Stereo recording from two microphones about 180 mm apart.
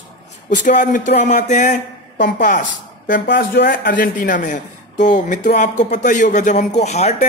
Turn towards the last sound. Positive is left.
turn(degrees=40)  # may be behind; listen again after turning